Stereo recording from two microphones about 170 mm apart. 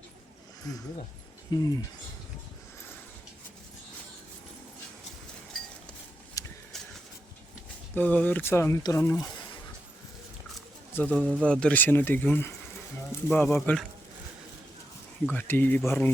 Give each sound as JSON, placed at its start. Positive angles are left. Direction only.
{"t": 0.7, "sound": "speech", "side_deg": 20}
{"t": 6.4, "sound": "a sound", "side_deg": 20}
{"t": 6.7, "sound": "a sound", "side_deg": 0}
{"t": 7.9, "sound": "speech", "side_deg": 10}
{"t": 10.9, "sound": "speech", "side_deg": 10}
{"t": 15.3, "sound": "speech", "side_deg": 10}